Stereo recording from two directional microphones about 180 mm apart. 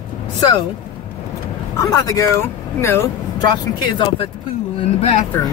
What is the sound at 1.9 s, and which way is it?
Speech, 20° left (ahead or behind).